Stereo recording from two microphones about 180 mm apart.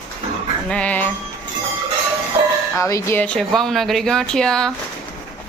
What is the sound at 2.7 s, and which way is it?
Speech, 15° left (ahead or behind).